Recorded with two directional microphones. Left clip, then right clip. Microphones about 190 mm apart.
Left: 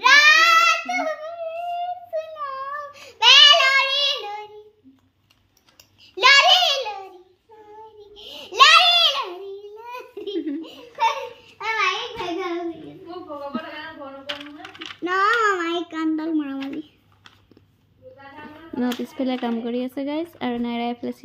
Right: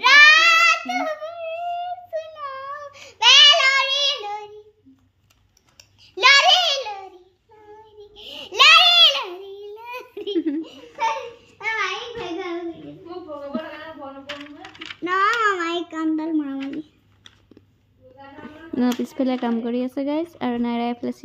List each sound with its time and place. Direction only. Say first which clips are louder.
0.0 s a sound: right 2 dB; 20° right (ahead or behind)
6.1 s a sound: even; 10° right (ahead or behind)
8.1 s babbling: right 2 dB; 15° right (ahead or behind)
10.3 s giggle: right 4 dB; 45° right (ahead or behind)
10.6 s belly laugh: left 2 dB; 5° right (ahead or behind)
11.5 s child singing: even; centre (ahead or behind)
14.2 s child singing: left 2 dB; 15° left (ahead or behind); by 16.5 s 5° right (ahead or behind)
18.4 s a sound: right 3 dB; 10° right (ahead or behind)
19.6 s speech: right 2 dB; 10° right (ahead or behind)